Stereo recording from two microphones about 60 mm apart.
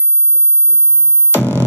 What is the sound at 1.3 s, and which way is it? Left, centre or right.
Music, right.